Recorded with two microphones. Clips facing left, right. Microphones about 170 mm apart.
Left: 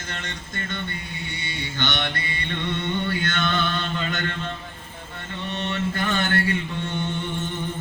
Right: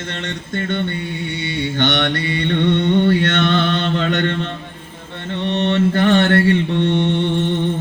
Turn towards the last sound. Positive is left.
turn(degrees=-75)  # may be behind; listen again after turning